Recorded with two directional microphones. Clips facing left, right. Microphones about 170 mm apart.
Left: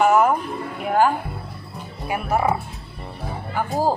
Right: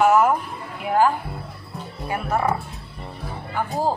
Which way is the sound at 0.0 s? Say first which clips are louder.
Even; centre (ahead or behind).